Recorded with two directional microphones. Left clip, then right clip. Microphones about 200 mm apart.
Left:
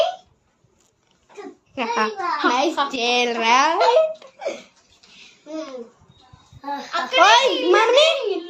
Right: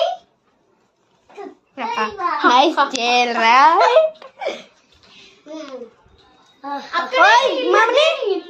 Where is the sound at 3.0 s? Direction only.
15° left (ahead or behind).